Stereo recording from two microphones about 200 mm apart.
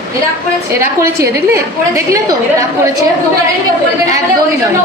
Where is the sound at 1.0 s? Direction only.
15° right (ahead or behind).